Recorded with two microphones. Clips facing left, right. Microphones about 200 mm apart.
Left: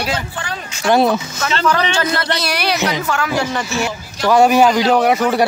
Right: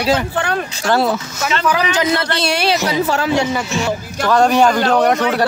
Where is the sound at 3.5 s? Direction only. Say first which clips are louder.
Right 2 dB; 5° right (ahead or behind).